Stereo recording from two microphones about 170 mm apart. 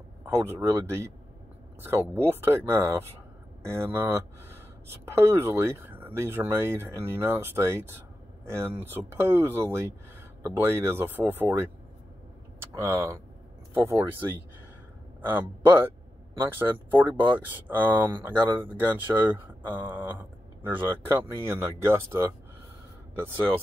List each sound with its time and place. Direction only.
0.3 s speech: 15° right (ahead or behind)
12.7 s speech: 15° right (ahead or behind)
15.2 s speech: 10° right (ahead or behind)